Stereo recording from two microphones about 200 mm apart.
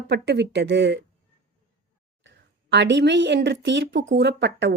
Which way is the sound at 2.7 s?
60° right (ahead or behind).